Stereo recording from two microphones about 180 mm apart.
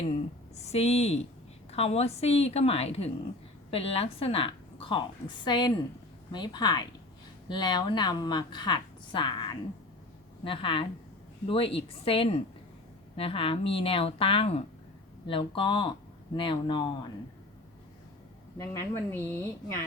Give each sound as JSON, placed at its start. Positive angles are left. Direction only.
{"t": 0.6, "sound": "a woman's voice", "side_deg": 35}
{"t": 18.5, "sound": "a woman's voice", "side_deg": 15}